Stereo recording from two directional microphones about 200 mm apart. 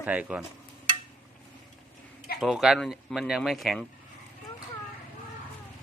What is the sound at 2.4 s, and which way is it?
Speech, centre (ahead or behind).